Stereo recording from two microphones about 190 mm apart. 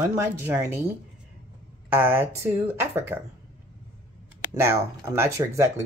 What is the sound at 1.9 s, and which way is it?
Speech, 10° right (ahead or behind).